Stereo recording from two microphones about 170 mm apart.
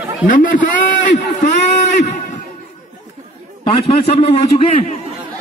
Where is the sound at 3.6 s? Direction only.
35° left (ahead or behind).